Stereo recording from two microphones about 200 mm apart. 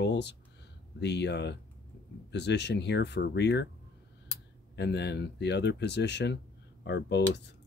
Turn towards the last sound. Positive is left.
turn(degrees=60)  # may be behind; listen again after turning